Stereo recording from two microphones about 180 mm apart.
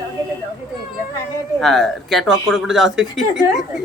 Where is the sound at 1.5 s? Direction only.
Centre (ahead or behind).